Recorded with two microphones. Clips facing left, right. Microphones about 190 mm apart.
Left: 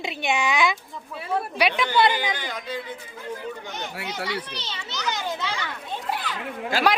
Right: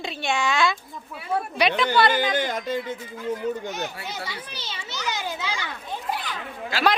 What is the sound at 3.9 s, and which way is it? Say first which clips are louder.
Speech: left 3 dB; 85° left.